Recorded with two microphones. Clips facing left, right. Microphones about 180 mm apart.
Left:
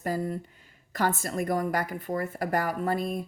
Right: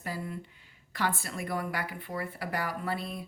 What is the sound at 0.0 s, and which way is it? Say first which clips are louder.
Speech: left 7 dB; 40° left (ahead or behind).